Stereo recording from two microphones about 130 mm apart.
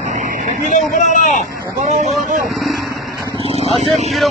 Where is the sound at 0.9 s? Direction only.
70° left (ahead or behind).